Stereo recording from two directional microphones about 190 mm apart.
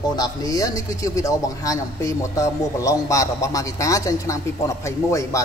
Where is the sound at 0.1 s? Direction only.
20° left (ahead or behind).